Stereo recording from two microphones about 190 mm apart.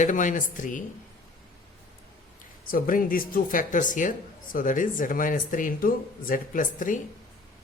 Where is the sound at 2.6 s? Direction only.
45° left (ahead or behind).